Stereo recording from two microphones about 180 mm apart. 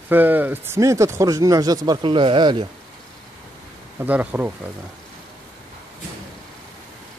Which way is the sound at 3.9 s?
10° right (ahead or behind).